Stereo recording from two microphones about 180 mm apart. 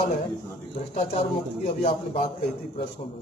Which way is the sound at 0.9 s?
30° left (ahead or behind).